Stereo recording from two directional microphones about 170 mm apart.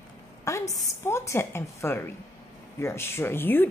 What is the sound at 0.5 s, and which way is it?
A woman's voice, 20° left (ahead or behind).